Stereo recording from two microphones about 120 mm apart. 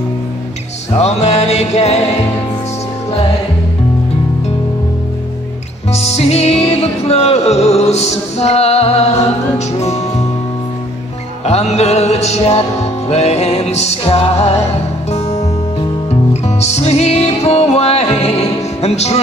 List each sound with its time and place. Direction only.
0.9 s music: 65° left (ahead or behind)
5.9 s music: 65° left (ahead or behind)
11.4 s music: 65° left (ahead or behind)
18.8 s speech: 60° left (ahead or behind)